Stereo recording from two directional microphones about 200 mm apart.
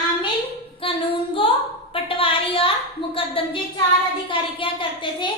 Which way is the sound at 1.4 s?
25° left (ahead or behind).